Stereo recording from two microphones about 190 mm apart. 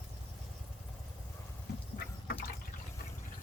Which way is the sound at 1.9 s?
55° left (ahead or behind).